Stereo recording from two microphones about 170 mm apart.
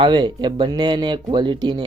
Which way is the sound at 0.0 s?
25° right (ahead or behind).